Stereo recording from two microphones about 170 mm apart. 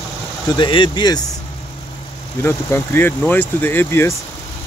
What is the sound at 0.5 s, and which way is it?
Speech, 30° left (ahead or behind).